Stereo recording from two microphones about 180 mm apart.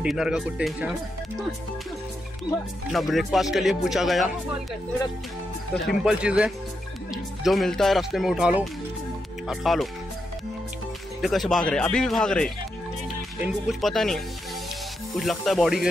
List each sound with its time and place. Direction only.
0.0 s speech: 5° right (ahead or behind)
2.5 s speech: 20° left (ahead or behind)
2.9 s speech: centre (ahead or behind)
6.0 s speech: 5° right (ahead or behind)
11.1 s speech: centre (ahead or behind)